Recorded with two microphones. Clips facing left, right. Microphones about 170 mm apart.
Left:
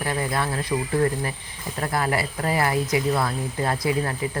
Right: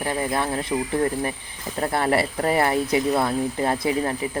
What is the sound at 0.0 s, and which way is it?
Speech, 20° right (ahead or behind).